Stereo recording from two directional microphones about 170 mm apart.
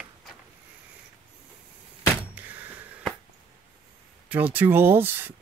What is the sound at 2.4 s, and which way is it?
Door, 10° right (ahead or behind).